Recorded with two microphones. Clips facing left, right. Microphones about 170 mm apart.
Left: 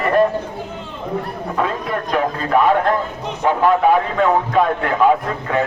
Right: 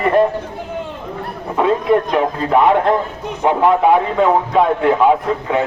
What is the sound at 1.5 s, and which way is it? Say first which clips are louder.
A man's voice: right 8 dB; 20° right (ahead or behind).